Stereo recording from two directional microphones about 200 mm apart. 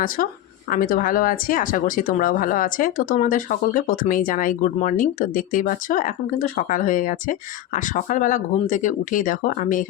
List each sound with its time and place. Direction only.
0.2 s speech: 45° left (ahead or behind)